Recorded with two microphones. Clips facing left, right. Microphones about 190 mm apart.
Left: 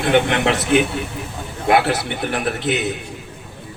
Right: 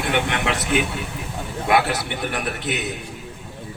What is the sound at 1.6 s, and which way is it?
A man's voice, 30° left (ahead or behind).